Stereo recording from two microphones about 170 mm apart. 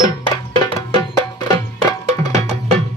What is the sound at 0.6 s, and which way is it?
Music, 25° left (ahead or behind).